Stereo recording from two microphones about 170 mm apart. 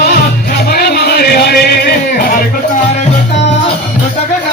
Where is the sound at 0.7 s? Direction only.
65° left (ahead or behind).